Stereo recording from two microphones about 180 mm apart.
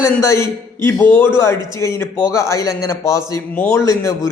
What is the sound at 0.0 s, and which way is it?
A man's voice, 15° left (ahead or behind).